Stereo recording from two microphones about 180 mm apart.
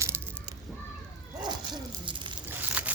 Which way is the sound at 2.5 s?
10° right (ahead or behind).